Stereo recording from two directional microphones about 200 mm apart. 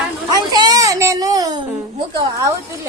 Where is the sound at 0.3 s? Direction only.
20° right (ahead or behind).